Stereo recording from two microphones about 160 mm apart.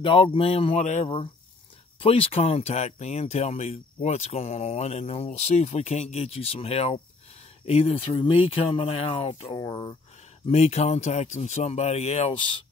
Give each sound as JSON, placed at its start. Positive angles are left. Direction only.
{"t": 0.0, "sound": "speech", "side_deg": 35}
{"t": 2.0, "sound": "speech", "side_deg": 35}